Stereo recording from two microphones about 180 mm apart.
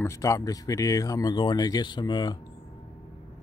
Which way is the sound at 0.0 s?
15° left (ahead or behind).